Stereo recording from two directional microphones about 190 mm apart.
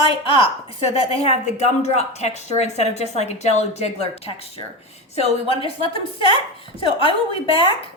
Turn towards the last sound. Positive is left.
turn(degrees=30)  # may be behind; listen again after turning